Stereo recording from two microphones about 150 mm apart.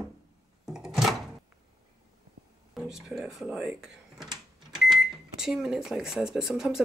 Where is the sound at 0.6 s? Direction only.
5° right (ahead or behind).